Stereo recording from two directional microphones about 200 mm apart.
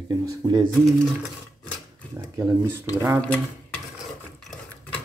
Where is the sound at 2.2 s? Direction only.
15° right (ahead or behind).